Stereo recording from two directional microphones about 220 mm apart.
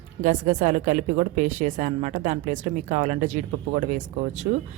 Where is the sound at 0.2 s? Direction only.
35° right (ahead or behind).